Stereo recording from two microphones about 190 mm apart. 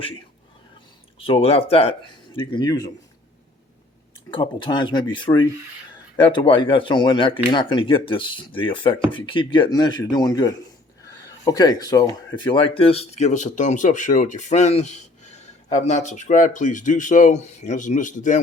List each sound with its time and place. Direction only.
1.2 s speech: 30° left (ahead or behind)
4.3 s speech: 25° left (ahead or behind); by 18.3 s 40° left (ahead or behind)